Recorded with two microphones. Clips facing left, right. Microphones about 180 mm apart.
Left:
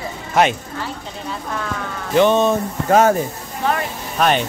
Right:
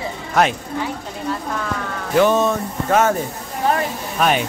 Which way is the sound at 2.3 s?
30° left (ahead or behind).